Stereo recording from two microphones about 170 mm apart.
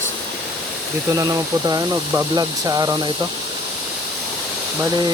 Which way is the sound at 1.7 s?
20° right (ahead or behind).